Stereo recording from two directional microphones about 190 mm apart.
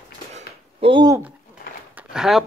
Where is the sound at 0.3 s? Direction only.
30° right (ahead or behind).